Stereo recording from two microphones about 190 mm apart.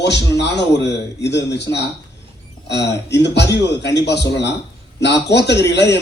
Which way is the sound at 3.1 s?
65° left (ahead or behind).